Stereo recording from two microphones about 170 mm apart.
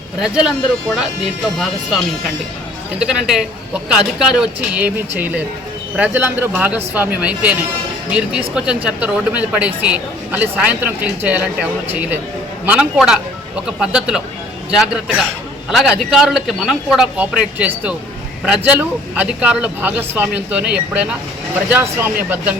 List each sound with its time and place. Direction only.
0.2 s a man's voice: 5° right (ahead or behind)